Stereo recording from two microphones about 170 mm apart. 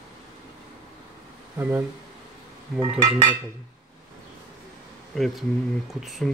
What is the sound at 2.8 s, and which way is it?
Speech, 25° right (ahead or behind).